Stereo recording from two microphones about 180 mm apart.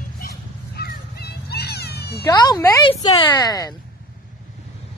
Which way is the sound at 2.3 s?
20° left (ahead or behind).